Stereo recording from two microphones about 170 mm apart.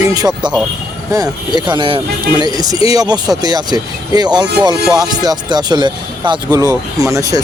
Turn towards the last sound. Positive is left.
turn(degrees=-20)  # may be behind; listen again after turning